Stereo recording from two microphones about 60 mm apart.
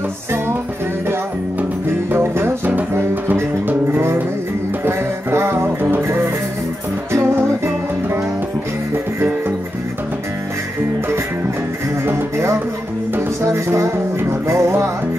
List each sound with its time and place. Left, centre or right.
1.9 s music: right
7.3 s music: right
12.1 s music: right